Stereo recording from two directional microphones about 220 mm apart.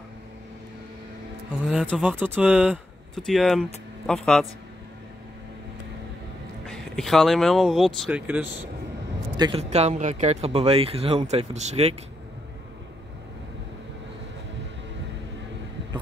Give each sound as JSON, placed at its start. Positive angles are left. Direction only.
{"t": 1.7, "sound": "speech", "side_deg": -5}
{"t": 6.6, "sound": "speech", "side_deg": 0}
{"t": 9.4, "sound": "speech", "side_deg": -25}